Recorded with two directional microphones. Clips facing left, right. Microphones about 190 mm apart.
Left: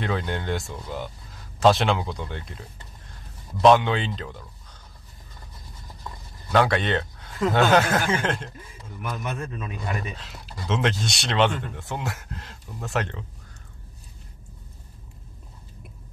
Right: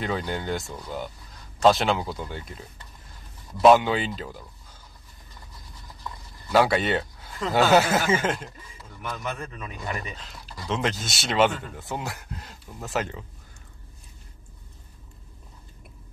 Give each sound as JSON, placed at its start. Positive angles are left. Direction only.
{"t": 0.0, "sound": "speech", "side_deg": 0}
{"t": 3.6, "sound": "speech", "side_deg": -5}
{"t": 6.5, "sound": "speech", "side_deg": -5}